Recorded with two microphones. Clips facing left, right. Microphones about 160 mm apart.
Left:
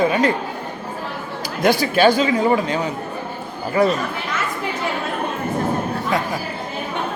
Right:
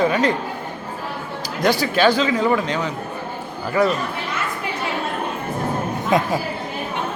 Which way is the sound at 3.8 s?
30° left (ahead or behind).